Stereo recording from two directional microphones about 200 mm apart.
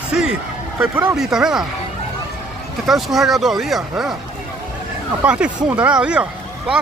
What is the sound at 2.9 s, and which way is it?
Speech, centre (ahead or behind).